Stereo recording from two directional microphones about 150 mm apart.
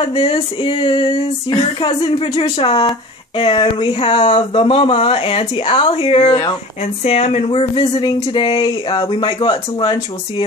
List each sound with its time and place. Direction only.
0.0 s speech: 35° left (ahead or behind)